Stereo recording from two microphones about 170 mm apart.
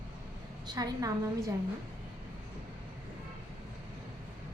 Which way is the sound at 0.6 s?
20° right (ahead or behind).